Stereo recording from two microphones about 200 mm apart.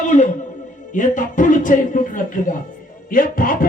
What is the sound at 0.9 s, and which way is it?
A man's voice, 40° left (ahead or behind).